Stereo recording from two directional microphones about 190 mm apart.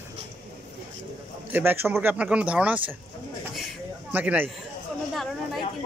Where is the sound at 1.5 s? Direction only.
10° right (ahead or behind).